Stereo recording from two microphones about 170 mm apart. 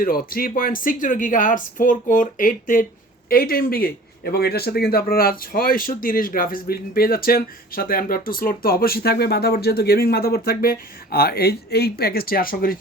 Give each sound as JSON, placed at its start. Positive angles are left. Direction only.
{"t": 0.0, "sound": "speech", "side_deg": 60}